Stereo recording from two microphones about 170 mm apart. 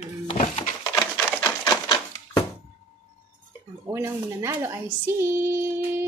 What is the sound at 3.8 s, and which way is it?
Speech, 15° right (ahead or behind).